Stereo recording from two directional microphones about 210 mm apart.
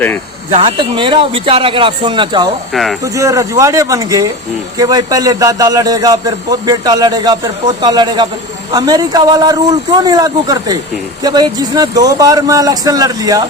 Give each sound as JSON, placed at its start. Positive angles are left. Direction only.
{"t": 0.5, "sound": "a man's voice", "side_deg": -25}